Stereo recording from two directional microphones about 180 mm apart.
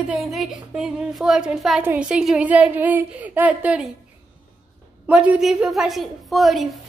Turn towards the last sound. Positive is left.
turn(degrees=0)  # may be behind; listen again after turning